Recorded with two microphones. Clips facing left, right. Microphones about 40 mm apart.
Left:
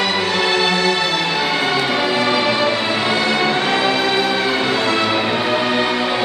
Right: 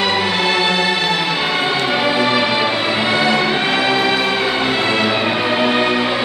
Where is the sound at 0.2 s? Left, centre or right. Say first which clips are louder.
Right 1 dB; centre.